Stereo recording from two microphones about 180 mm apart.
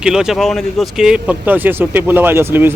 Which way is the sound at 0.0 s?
5° right (ahead or behind).